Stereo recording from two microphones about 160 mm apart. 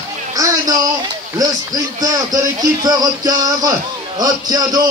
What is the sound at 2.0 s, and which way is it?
Speech, 25° right (ahead or behind).